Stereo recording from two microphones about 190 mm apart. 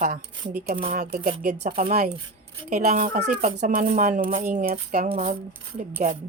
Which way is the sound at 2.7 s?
40° right (ahead or behind).